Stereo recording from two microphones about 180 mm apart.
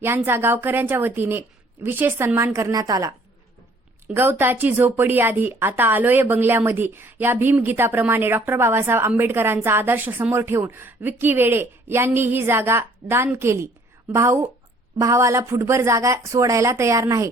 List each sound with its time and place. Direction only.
0.0 s a woman's voice: 15° right (ahead or behind)